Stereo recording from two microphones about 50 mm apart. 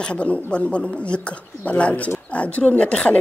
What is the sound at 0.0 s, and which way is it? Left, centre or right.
Speech, left.